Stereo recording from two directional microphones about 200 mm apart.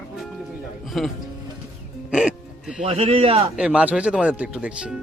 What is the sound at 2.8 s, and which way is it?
Speech, 30° right (ahead or behind).